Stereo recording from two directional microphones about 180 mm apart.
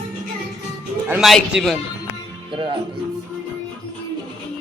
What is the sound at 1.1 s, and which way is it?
Speech, centre (ahead or behind).